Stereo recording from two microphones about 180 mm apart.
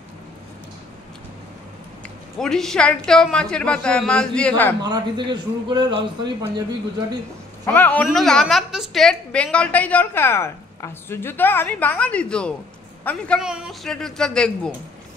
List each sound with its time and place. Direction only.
2.3 s a woman's voice: centre (ahead or behind)
4.8 s a man's voice: 25° right (ahead or behind)
7.6 s a woman's voice: 10° left (ahead or behind)
13.4 s a woman's voice: 5° right (ahead or behind)